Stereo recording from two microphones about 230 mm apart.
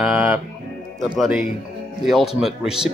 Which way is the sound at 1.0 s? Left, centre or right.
Centre.